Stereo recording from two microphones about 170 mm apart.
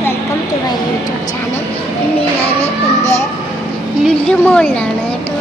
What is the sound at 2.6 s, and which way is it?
Child singing, 40° left (ahead or behind).